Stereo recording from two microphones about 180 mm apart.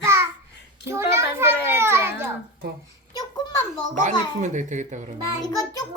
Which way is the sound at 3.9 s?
45° right (ahead or behind).